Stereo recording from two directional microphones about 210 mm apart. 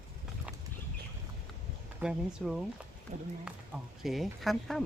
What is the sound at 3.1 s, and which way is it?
Speech, 35° right (ahead or behind).